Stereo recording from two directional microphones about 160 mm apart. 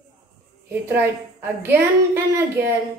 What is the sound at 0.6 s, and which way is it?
A woman's voice, 15° right (ahead or behind).